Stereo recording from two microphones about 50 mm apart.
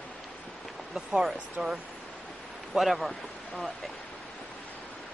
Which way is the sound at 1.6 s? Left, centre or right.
Centre.